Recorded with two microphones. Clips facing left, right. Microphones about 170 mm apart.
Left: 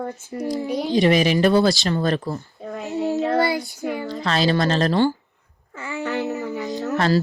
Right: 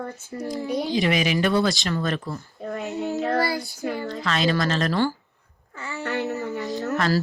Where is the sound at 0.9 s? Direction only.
40° left (ahead or behind).